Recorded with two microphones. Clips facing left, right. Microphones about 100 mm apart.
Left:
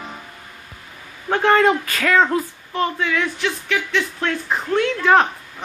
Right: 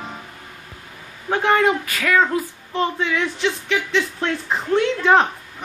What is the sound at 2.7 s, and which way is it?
Speech, 20° right (ahead or behind).